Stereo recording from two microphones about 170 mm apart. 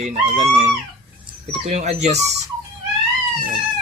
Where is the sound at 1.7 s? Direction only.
40° right (ahead or behind).